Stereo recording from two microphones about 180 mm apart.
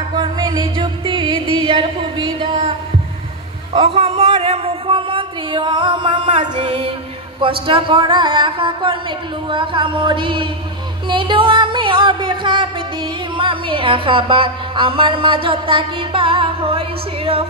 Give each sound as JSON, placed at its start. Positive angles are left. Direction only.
{"t": 0.1, "sound": "music", "side_deg": -25}
{"t": 3.7, "sound": "speech", "side_deg": -30}
{"t": 6.6, "sound": "music", "side_deg": -35}
{"t": 7.6, "sound": "speech", "side_deg": -30}